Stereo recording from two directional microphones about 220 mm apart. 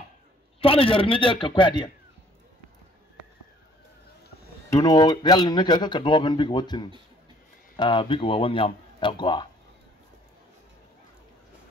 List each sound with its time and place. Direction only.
0.6 s speech: 25° left (ahead or behind)
4.6 s speech: 15° left (ahead or behind)